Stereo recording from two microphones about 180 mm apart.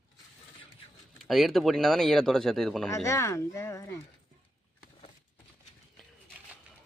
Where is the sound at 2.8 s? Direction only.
15° left (ahead or behind).